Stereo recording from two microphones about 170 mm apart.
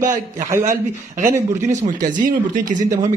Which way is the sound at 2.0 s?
50° right (ahead or behind).